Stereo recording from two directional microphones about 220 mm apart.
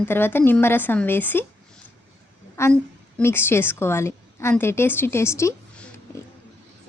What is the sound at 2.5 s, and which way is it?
A woman's voice, 10° left (ahead or behind).